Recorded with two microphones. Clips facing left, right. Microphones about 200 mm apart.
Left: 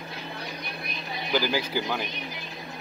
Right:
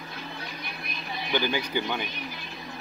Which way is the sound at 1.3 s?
5° left (ahead or behind).